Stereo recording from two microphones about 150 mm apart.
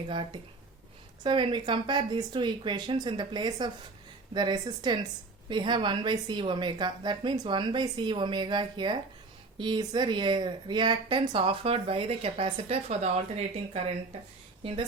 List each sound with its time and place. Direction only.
1.2 s speech: 35° right (ahead or behind)